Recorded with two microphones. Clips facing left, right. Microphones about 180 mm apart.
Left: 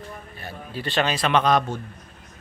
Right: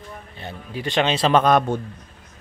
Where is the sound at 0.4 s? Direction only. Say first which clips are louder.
Right 3 dB; 20° right (ahead or behind).